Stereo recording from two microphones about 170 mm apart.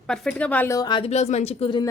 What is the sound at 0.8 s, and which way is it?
A woman's voice, 25° left (ahead or behind).